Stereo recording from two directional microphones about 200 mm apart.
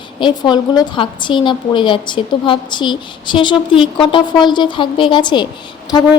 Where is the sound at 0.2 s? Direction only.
20° left (ahead or behind).